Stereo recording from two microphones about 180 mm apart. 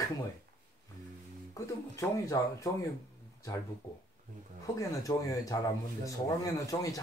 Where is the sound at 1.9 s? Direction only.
15° left (ahead or behind).